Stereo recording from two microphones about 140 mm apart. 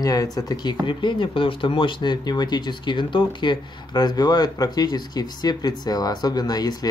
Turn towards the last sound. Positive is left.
turn(degrees=30)  # may be behind; listen again after turning